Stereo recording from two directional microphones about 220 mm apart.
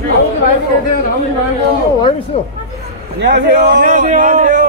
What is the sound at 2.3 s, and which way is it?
Speech, 25° left (ahead or behind).